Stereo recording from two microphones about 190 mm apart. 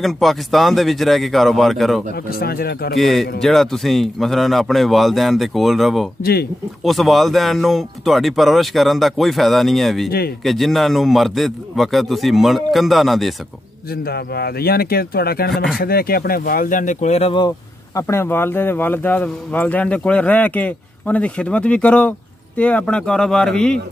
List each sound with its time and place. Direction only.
0.0 s speech: centre (ahead or behind)
2.2 s speech: 50° left (ahead or behind)
3.0 s speech: centre (ahead or behind)
10.0 s speech: 55° left (ahead or behind)
10.4 s speech: centre (ahead or behind)
14.0 s speech: 55° left (ahead or behind)
15.5 s speech: centre (ahead or behind)
15.8 s speech: 55° left (ahead or behind); by 17.5 s 30° left (ahead or behind)
17.9 s a man's voice: 15° left (ahead or behind)